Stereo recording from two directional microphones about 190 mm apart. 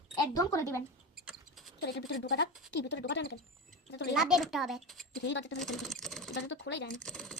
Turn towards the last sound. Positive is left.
turn(degrees=5)  # may be behind; listen again after turning